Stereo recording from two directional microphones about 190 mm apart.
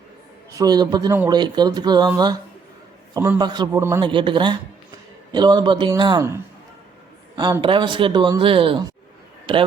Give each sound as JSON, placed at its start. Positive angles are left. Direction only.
{"t": 0.5, "sound": "a man's voice", "side_deg": -20}
{"t": 4.0, "sound": "speech", "side_deg": -25}